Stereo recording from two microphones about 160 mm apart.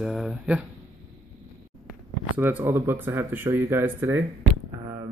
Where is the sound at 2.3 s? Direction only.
10° right (ahead or behind).